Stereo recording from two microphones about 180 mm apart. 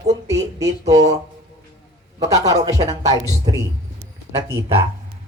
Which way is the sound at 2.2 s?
20° right (ahead or behind).